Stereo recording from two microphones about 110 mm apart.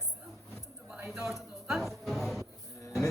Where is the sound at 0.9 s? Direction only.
20° right (ahead or behind).